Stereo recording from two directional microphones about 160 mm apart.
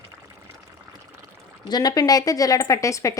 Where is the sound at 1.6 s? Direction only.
25° left (ahead or behind).